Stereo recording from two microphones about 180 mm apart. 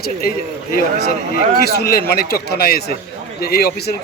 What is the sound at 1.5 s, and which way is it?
Speech, 65° left (ahead or behind).